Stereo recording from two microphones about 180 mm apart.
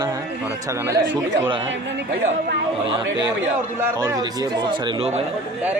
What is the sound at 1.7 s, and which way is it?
Speech, 75° right (ahead or behind).